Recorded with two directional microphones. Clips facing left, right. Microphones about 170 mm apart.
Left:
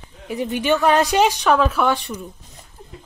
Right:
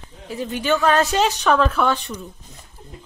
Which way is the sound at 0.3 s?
15° left (ahead or behind).